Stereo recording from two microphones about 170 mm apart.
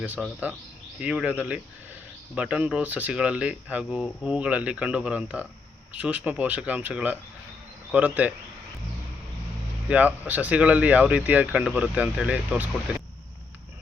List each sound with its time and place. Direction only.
0.2 s speech: 5° right (ahead or behind)
9.9 s speech: 10° right (ahead or behind)